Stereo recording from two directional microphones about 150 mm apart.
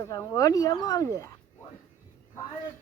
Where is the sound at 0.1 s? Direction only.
25° left (ahead or behind).